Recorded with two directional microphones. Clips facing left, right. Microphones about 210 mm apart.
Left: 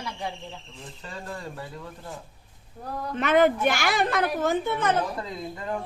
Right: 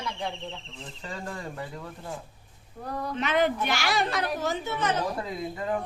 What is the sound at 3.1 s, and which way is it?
A child's voice, 50° left (ahead or behind).